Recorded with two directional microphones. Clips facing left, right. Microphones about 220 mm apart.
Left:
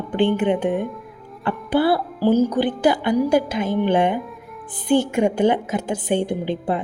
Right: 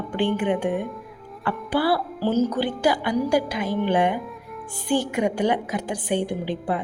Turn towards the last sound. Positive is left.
turn(degrees=25)  # may be behind; listen again after turning